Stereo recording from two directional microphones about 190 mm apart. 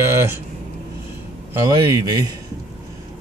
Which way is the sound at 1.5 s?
20° right (ahead or behind).